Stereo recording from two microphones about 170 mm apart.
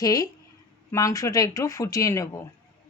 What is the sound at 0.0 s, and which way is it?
Speech, 20° left (ahead or behind).